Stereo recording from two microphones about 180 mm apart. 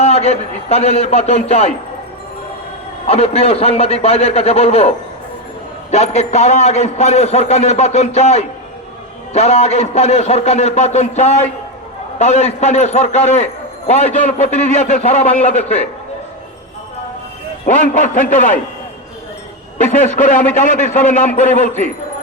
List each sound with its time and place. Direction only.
0.0 s a man's voice: 35° left (ahead or behind)
3.1 s a man's voice: 35° left (ahead or behind)
17.7 s a man's voice: 45° left (ahead or behind)
19.8 s a man's voice: 45° left (ahead or behind)